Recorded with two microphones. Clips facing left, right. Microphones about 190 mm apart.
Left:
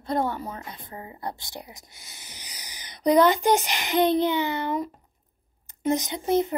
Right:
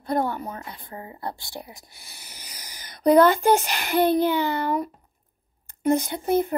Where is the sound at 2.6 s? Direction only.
15° left (ahead or behind).